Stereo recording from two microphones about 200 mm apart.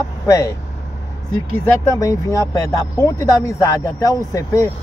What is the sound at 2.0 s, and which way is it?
Speech, 15° left (ahead or behind).